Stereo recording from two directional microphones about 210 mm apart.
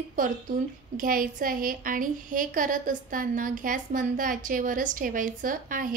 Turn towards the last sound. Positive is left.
turn(degrees=-40)  # may be behind; listen again after turning